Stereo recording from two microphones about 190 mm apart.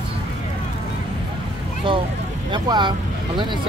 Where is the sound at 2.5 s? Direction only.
25° right (ahead or behind).